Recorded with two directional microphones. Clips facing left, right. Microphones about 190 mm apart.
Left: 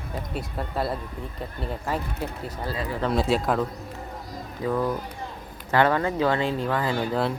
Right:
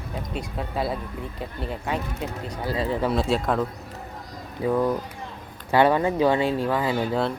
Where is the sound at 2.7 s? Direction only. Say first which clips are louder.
Right 7 dB; 25° right (ahead or behind).